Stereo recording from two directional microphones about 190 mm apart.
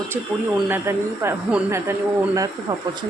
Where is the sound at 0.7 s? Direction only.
10° right (ahead or behind).